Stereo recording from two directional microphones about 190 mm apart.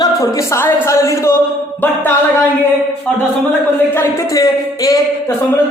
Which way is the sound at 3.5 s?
15° left (ahead or behind).